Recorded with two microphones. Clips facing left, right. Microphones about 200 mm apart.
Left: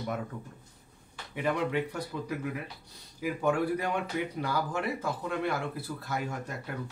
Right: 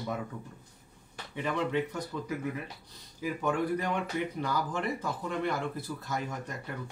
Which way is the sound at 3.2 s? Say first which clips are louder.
Left 2 dB; 10° left (ahead or behind).